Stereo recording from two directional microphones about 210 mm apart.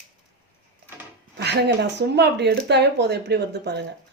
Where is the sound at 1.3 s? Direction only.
55° right (ahead or behind).